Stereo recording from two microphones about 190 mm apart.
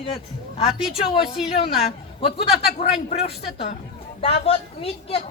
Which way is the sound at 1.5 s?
30° left (ahead or behind).